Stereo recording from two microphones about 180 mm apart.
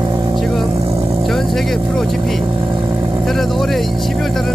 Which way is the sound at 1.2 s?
Centre (ahead or behind).